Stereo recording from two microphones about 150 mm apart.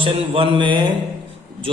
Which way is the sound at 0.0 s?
35° right (ahead or behind).